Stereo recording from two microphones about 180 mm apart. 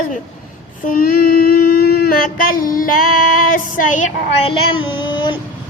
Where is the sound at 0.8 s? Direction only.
55° left (ahead or behind).